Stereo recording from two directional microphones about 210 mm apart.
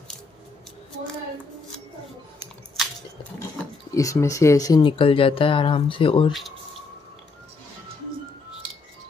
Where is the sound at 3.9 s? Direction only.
15° left (ahead or behind).